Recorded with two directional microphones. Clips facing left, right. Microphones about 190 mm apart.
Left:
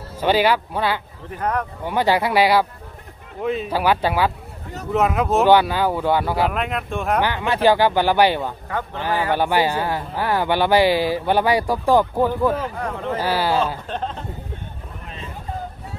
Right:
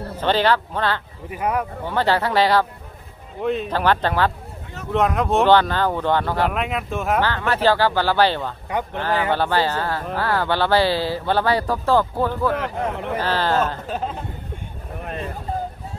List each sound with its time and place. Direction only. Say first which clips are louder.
0.2 s speech: left 1 dB; 10° left (ahead or behind)
1.3 s speech: right 1 dB; 10° right (ahead or behind)
1.9 s speech: left 2 dB; 10° left (ahead or behind)
6.5 s speech: even; centre (ahead or behind)
7.2 s speech: left 2 dB; 15° left (ahead or behind)
12.7 s speech: right 1 dB; 20° right (ahead or behind)
13.2 s speech: even; 10° left (ahead or behind)
13.8 s speech: right 1 dB; 5° right (ahead or behind)
15.0 s a sound: right 7 dB; 55° right (ahead or behind)